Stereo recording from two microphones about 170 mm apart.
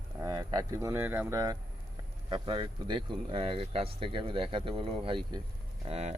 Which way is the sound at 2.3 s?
30° right (ahead or behind).